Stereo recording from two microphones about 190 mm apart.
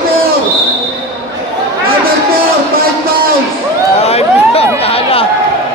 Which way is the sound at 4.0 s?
35° left (ahead or behind).